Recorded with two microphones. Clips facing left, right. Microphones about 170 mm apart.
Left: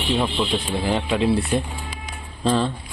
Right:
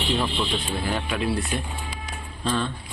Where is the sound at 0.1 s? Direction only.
20° left (ahead or behind).